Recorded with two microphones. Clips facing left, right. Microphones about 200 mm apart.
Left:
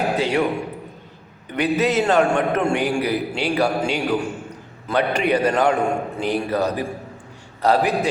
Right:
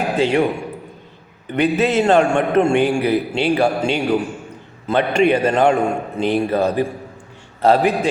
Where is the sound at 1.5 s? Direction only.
30° right (ahead or behind).